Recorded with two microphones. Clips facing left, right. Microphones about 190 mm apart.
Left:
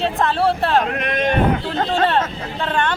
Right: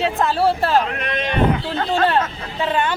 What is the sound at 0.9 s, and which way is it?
Speech, 45° left (ahead or behind).